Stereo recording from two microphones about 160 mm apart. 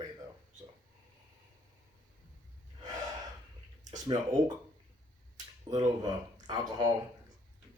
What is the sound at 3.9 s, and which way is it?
Speech, 25° right (ahead or behind).